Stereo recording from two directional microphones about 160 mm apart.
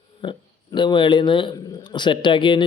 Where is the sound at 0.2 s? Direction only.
30° left (ahead or behind).